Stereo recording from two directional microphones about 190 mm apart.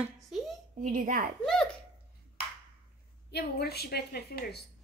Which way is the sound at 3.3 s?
60° left (ahead or behind).